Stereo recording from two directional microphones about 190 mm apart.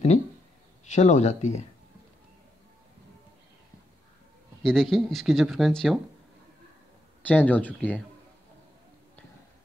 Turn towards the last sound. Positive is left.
turn(degrees=10)  # may be behind; listen again after turning